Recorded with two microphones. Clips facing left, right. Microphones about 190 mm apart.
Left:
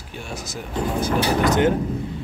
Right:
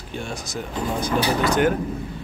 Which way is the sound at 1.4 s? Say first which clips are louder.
Left 2 dB; 20° left (ahead or behind).